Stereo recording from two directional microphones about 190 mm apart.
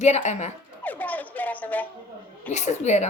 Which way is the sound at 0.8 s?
10° left (ahead or behind).